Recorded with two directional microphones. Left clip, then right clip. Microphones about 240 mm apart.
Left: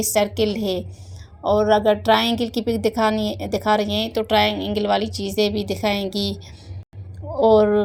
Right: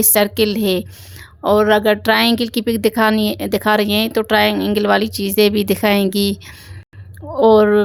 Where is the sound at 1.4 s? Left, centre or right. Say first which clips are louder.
Right 4 dB; right.